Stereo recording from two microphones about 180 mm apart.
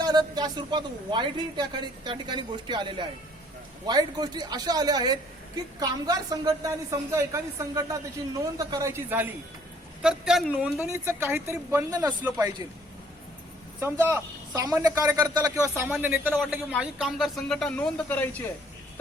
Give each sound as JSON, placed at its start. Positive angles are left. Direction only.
{"t": 0.0, "sound": "a woman's voice", "side_deg": -20}
{"t": 10.8, "sound": "a woman's voice", "side_deg": -15}
{"t": 13.7, "sound": "a woman's voice", "side_deg": -15}